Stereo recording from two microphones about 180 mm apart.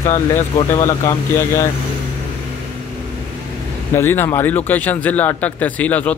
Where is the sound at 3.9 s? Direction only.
15° left (ahead or behind).